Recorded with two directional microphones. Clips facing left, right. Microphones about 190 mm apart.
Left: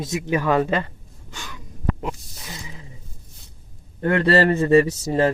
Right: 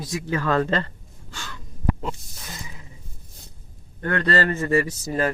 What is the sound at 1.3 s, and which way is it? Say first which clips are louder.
Gasp: left 1 dB; 15° left (ahead or behind).